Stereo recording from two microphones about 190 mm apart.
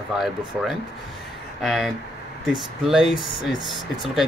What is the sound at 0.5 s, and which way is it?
Speech, centre (ahead or behind).